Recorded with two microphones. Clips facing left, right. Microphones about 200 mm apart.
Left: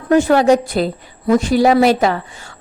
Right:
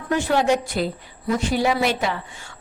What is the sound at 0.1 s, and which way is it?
A woman's voice, 45° left (ahead or behind).